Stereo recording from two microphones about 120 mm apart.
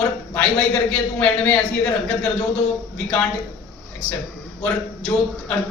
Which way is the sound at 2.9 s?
10° left (ahead or behind).